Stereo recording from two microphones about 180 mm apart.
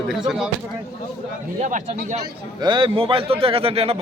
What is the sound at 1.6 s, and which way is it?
Speech, 40° right (ahead or behind).